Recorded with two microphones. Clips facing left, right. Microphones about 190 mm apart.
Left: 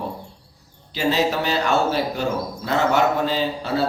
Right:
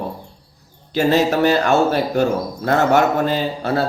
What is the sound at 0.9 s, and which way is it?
A man's voice, 50° right (ahead or behind).